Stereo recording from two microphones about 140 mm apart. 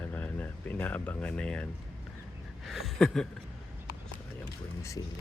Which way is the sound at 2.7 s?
Centre (ahead or behind).